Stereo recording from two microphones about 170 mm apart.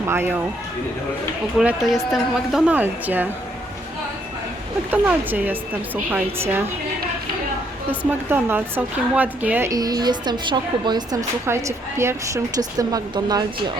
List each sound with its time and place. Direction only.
0.1 s a woman's voice: 15° right (ahead or behind)
1.5 s a woman's voice: 5° right (ahead or behind)
4.9 s a woman's voice: 10° right (ahead or behind)
7.9 s speech: 10° right (ahead or behind)